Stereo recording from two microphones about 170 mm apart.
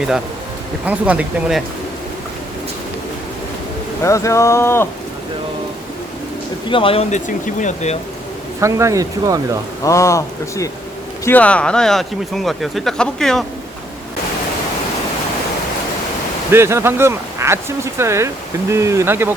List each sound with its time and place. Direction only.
0.9 s speech: 10° right (ahead or behind)
4.0 s speech: 20° left (ahead or behind)
6.7 s speech: 30° left (ahead or behind)
7.1 s speech: 50° left (ahead or behind)
8.6 s speech: 20° right (ahead or behind)
9.8 s speech: 15° left (ahead or behind)
16.5 s speech: 15° right (ahead or behind)